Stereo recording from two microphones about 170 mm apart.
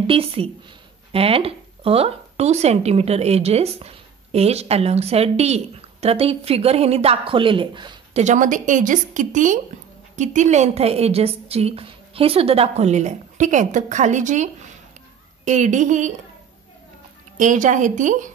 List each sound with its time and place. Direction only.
0.0 s speech: 35° right (ahead or behind)
8.2 s speech: 45° right (ahead or behind)
17.4 s speech: 50° right (ahead or behind)